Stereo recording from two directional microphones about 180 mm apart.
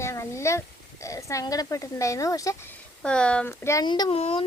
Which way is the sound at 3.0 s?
5° left (ahead or behind).